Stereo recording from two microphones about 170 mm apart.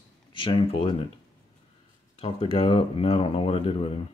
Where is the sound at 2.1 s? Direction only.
30° left (ahead or behind).